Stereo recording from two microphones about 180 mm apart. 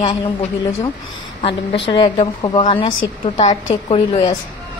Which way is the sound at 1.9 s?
30° left (ahead or behind).